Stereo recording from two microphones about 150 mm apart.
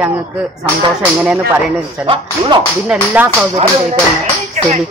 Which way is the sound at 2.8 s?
10° right (ahead or behind).